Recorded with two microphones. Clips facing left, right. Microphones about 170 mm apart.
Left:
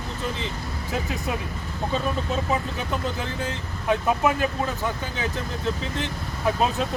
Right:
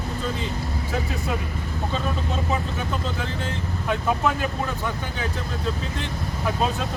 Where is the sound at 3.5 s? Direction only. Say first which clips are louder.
Left 3 dB; 20° left (ahead or behind).